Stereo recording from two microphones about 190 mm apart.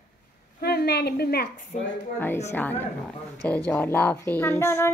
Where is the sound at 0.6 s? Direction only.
55° left (ahead or behind).